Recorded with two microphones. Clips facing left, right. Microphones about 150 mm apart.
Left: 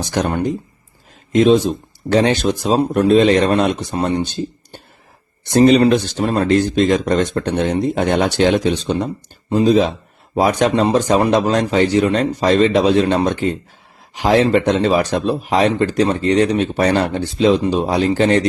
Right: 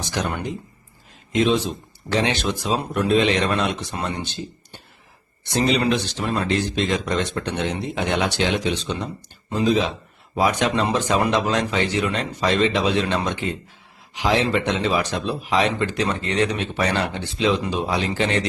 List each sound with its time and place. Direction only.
0.1 s speech: 40° left (ahead or behind)
5.5 s speech: 45° left (ahead or behind)